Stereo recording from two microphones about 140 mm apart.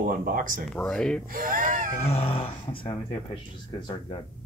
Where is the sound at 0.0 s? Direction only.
85° right.